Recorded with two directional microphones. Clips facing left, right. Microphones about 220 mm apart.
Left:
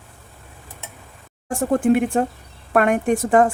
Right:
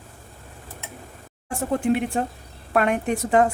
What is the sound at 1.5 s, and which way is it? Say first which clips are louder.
A woman's voice: left 5 dB; 50° left (ahead or behind).